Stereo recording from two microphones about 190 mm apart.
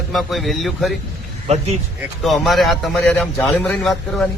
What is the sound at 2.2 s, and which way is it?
A man's voice, centre (ahead or behind).